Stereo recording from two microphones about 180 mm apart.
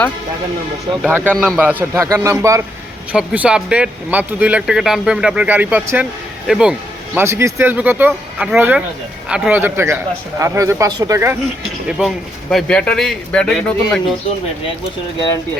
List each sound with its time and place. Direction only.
1.0 s speech: 10° right (ahead or behind)
11.9 s speech: 5° right (ahead or behind)